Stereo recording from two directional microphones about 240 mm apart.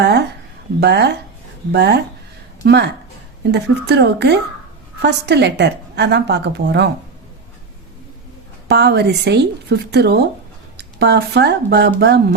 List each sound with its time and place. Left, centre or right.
0.0 s a sound: right
0.8 s a woman's voice: right
8.6 s a woman's voice: right